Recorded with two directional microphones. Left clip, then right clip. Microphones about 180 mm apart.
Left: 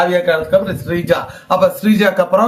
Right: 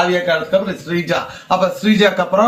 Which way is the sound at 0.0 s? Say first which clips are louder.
Left 2 dB; 35° left (ahead or behind).